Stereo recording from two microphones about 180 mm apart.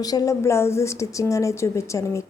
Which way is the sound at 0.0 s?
20° left (ahead or behind).